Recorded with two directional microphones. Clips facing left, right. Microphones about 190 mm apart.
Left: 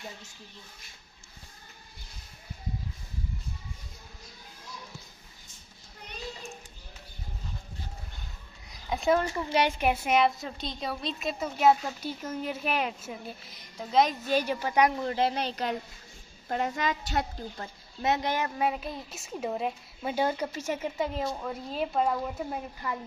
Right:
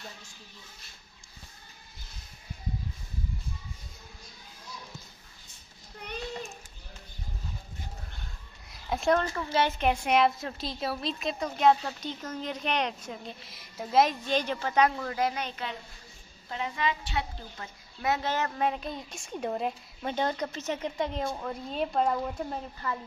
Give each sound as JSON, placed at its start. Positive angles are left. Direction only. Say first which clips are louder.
{"t": 8.6, "sound": "a sound", "louder": "even", "side_deg": 0}
{"t": 9.2, "sound": "a woman's voice", "louder": "left 1 dB", "side_deg": 15}
{"t": 14.2, "sound": "a woman's voice", "louder": "left 2 dB", "side_deg": 10}
{"t": 18.0, "sound": "a woman's voice", "louder": "left 1 dB", "side_deg": 15}